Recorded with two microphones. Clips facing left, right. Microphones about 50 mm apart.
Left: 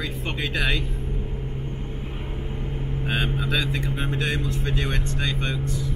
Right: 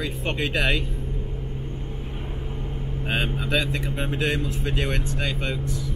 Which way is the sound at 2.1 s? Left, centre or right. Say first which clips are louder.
Left 1 dB; centre.